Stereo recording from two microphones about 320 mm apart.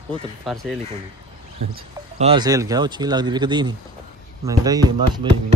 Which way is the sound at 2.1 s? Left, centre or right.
Centre.